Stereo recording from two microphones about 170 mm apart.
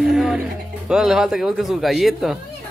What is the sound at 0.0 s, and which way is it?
Music, centre (ahead or behind).